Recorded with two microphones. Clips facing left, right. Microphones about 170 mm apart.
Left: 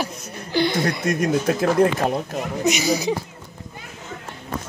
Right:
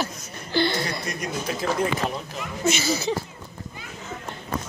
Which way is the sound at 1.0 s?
50° left (ahead or behind).